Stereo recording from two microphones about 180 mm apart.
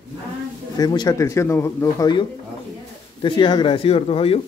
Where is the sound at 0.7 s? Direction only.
20° left (ahead or behind).